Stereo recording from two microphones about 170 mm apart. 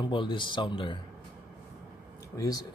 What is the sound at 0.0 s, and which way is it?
Speech, 30° left (ahead or behind).